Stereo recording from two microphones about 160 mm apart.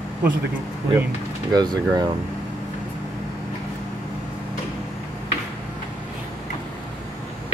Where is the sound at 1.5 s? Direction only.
25° right (ahead or behind).